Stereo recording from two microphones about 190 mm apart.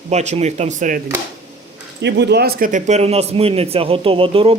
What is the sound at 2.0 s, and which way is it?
Speech, 65° right (ahead or behind).